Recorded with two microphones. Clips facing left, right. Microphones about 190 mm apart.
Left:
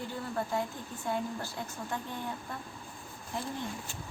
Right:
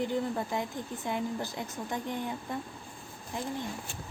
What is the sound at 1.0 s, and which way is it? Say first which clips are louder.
Speech: even; 15° right (ahead or behind).